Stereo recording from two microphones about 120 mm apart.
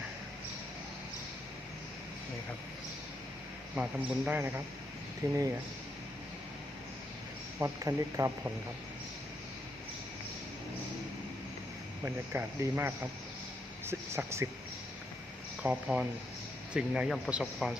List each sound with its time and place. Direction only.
3.8 s speech: 10° right (ahead or behind)
7.6 s speech: 25° right (ahead or behind)
12.0 s speech: 20° right (ahead or behind)
15.6 s speech: 10° right (ahead or behind)